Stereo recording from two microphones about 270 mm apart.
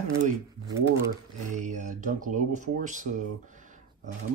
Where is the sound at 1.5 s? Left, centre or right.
Right.